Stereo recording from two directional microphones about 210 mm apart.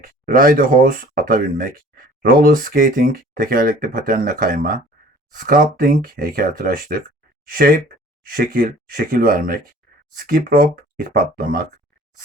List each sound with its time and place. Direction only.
0.0 s speech: 40° right (ahead or behind)